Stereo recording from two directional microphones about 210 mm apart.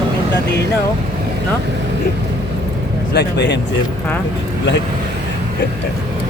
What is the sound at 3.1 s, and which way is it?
Speech, 55° left (ahead or behind).